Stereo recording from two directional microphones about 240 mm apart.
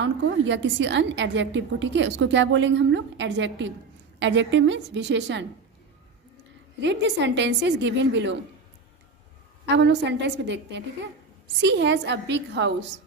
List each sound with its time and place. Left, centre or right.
0.0 s a woman's voice: right
6.8 s a woman's voice: right
9.7 s a woman's voice: right